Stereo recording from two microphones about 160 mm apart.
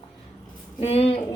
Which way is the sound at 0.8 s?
40° left (ahead or behind).